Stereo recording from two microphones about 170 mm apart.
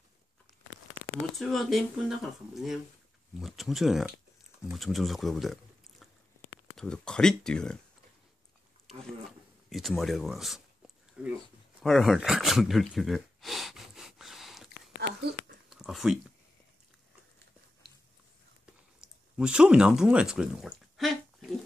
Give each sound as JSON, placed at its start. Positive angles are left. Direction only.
{"t": 1.3, "sound": "speech", "side_deg": 0}
{"t": 9.7, "sound": "speech", "side_deg": 0}
{"t": 11.8, "sound": "gasp", "side_deg": 0}
{"t": 15.0, "sound": "a sound", "side_deg": -70}
{"t": 15.7, "sound": "speech", "side_deg": 0}
{"t": 18.9, "sound": "speech", "side_deg": -5}